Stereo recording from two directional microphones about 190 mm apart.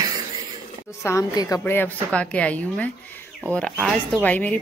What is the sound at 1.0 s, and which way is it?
Speech, 20° left (ahead or behind).